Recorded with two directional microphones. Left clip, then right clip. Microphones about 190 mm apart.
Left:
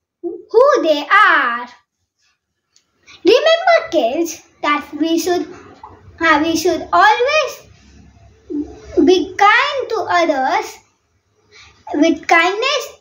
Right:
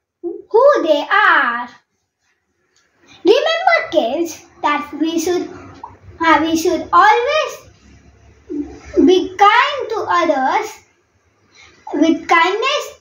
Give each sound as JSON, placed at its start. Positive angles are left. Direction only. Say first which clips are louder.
{"t": 0.5, "sound": "a child's voice", "louder": "even", "side_deg": 20}
{"t": 3.1, "sound": "a sound", "louder": "left 2 dB", "side_deg": 20}
{"t": 6.1, "sound": "a child's voice", "louder": "right 1 dB", "side_deg": 20}
{"t": 9.0, "sound": "a child's voice", "louder": "right 1 dB", "side_deg": 15}
{"t": 12.0, "sound": "a child's voice", "louder": "even", "side_deg": 15}